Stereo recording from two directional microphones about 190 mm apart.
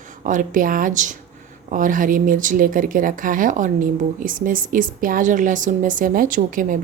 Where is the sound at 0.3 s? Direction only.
45° right (ahead or behind).